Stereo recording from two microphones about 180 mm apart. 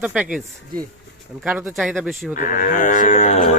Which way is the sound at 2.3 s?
45° left (ahead or behind).